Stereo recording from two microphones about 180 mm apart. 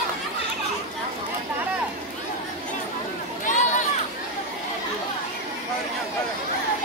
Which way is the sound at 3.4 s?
45° left (ahead or behind).